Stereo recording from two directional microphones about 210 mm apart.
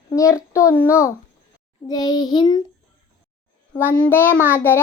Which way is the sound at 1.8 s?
20° left (ahead or behind).